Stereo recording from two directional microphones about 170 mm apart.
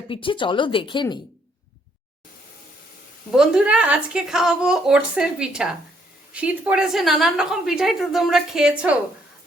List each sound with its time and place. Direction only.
0.1 s speech: 30° left (ahead or behind)
3.3 s a woman's voice: 5° right (ahead or behind)